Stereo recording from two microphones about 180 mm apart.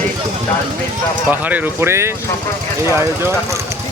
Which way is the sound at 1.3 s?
10° right (ahead or behind).